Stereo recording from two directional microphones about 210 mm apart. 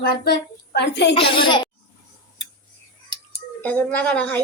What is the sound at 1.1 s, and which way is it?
Speech, 25° left (ahead or behind).